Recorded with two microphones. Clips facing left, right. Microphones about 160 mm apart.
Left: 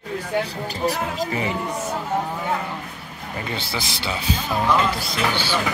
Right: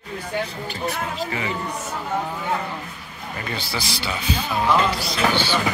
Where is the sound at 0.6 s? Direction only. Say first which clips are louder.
Left 3 dB; 35° left (ahead or behind).